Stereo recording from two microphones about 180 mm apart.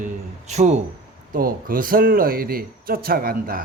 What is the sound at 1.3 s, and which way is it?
Speech, 50° right (ahead or behind).